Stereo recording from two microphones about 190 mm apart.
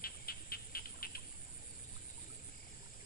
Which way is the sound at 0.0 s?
50° left (ahead or behind).